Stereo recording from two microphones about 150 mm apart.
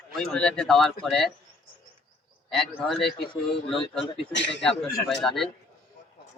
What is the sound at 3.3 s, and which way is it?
Speech, 35° left (ahead or behind).